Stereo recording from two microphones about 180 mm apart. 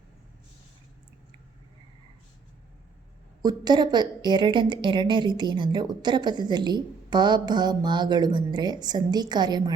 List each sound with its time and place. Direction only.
3.4 s a woman's voice: 25° right (ahead or behind)